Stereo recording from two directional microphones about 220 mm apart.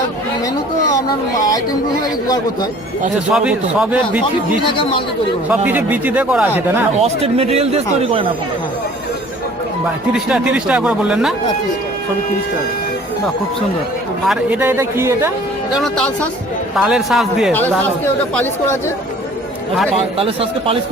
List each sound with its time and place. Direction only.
3.3 s speech: 5° right (ahead or behind)
4.6 s speech: 25° left (ahead or behind)
5.5 s speech: 10° right (ahead or behind)
7.0 s speech: 25° right (ahead or behind)
10.1 s speech: 5° right (ahead or behind)
14.3 s speech: 10° right (ahead or behind)
15.7 s speech: centre (ahead or behind)
20.1 s speech: 25° right (ahead or behind)